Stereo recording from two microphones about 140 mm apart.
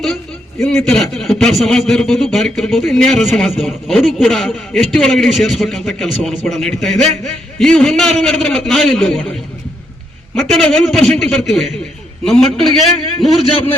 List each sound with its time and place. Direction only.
0.8 s a man's voice: 5° left (ahead or behind)
13.1 s a man's voice: 40° left (ahead or behind)